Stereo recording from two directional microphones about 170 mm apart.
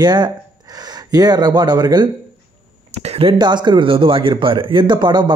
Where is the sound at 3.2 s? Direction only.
30° right (ahead or behind).